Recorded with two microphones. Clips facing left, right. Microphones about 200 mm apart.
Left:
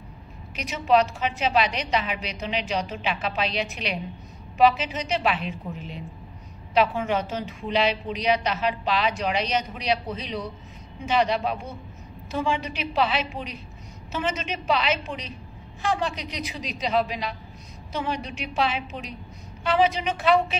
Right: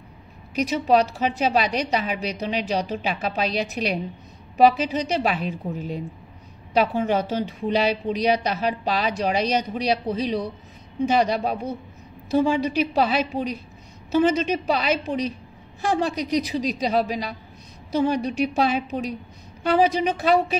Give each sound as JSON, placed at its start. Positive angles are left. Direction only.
{"t": 0.6, "sound": "a woman's voice", "side_deg": -35}